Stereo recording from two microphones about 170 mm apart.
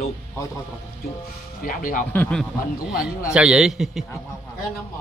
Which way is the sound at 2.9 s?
5° right (ahead or behind).